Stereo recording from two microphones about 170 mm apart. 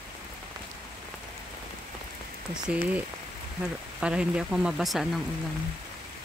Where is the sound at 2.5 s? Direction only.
5° right (ahead or behind).